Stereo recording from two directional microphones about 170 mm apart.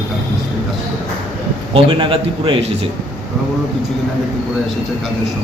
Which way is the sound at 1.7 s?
30° right (ahead or behind).